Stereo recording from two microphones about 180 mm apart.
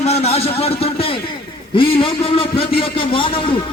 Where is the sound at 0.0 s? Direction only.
35° left (ahead or behind).